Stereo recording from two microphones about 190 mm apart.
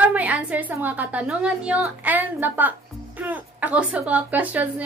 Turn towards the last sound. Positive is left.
turn(degrees=-10)  # may be behind; listen again after turning